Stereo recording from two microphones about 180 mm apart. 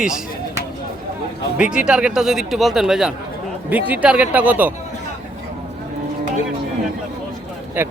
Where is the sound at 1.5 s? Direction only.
5° right (ahead or behind).